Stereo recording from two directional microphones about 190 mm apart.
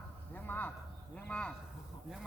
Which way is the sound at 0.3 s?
10° left (ahead or behind).